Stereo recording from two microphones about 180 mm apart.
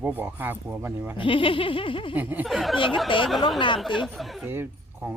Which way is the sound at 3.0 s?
30° left (ahead or behind).